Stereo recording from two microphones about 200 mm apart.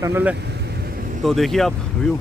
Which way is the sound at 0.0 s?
10° right (ahead or behind).